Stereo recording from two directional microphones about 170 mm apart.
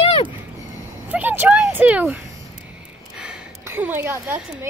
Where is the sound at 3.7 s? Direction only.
10° right (ahead or behind).